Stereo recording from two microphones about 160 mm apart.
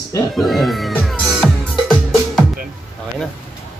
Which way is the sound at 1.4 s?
5° left (ahead or behind).